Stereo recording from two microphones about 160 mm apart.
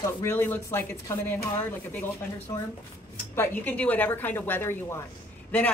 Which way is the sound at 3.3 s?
15° left (ahead or behind).